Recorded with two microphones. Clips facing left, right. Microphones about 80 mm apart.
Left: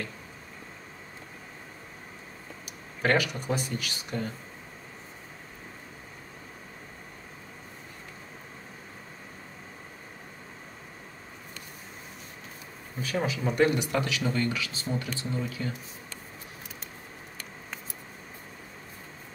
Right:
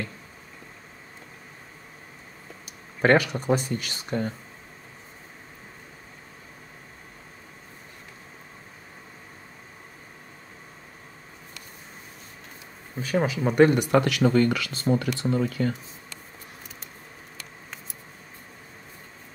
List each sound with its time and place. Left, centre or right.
3.0 s speech: right
13.1 s speech: right
14.0 s speech: right